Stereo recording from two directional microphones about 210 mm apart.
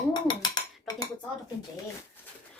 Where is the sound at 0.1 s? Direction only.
20° left (ahead or behind).